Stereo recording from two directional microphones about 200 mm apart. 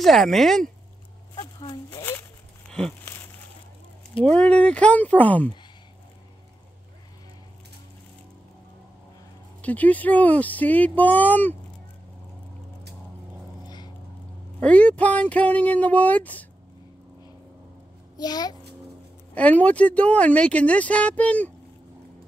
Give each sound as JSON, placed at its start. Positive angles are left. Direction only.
{"t": 0.0, "sound": "speech", "side_deg": 0}
{"t": 1.3, "sound": "a sound", "side_deg": 20}
{"t": 4.3, "sound": "speech", "side_deg": 5}
{"t": 9.6, "sound": "speech", "side_deg": 10}
{"t": 14.6, "sound": "speech", "side_deg": 5}
{"t": 18.1, "sound": "a child's voice", "side_deg": 20}
{"t": 19.3, "sound": "speech", "side_deg": 5}